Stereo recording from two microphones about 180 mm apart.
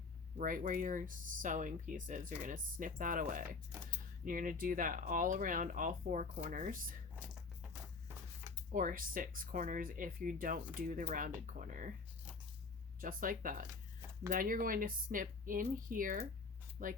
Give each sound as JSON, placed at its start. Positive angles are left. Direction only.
{"t": 0.3, "sound": "speech", "side_deg": -50}
{"t": 8.7, "sound": "speech", "side_deg": -50}
{"t": 13.0, "sound": "speech", "side_deg": -50}